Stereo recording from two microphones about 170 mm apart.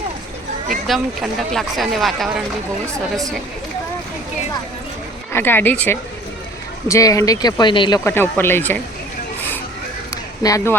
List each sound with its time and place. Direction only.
0.9 s speech: centre (ahead or behind)
5.3 s speech: 10° left (ahead or behind)
8.0 s speech: 15° left (ahead or behind)
10.4 s speech: 15° left (ahead or behind)